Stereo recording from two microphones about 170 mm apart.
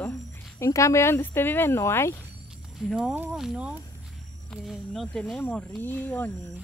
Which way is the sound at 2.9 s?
10° right (ahead or behind).